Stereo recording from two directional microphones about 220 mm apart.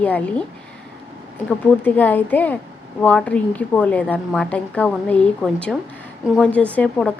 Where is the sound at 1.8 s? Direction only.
10° left (ahead or behind).